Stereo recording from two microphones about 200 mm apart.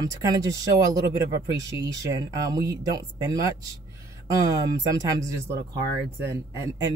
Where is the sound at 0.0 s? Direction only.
20° right (ahead or behind).